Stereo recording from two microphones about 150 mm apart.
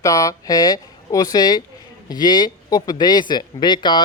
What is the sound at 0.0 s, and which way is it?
Speech, 20° left (ahead or behind).